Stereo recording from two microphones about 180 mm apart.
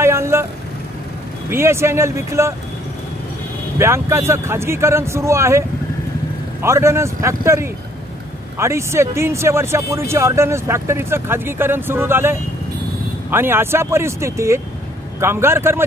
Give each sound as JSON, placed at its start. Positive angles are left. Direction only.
{"t": 0.0, "sound": "vehicle", "side_deg": -15}
{"t": 1.5, "sound": "speech", "side_deg": -15}
{"t": 3.7, "sound": "speech", "side_deg": -15}